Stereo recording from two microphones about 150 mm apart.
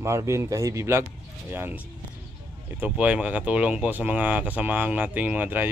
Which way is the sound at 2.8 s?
10° right (ahead or behind).